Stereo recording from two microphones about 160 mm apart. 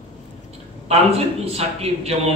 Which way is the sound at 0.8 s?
40° right (ahead or behind).